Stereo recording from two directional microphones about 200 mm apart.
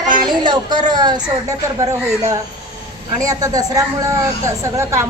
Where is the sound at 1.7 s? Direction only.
15° right (ahead or behind).